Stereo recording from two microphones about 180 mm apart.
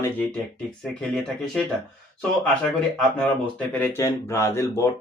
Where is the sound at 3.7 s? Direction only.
10° left (ahead or behind).